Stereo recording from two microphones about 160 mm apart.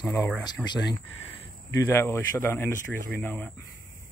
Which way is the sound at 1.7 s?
15° left (ahead or behind).